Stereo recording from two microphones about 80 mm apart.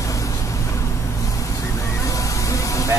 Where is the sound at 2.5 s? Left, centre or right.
Left.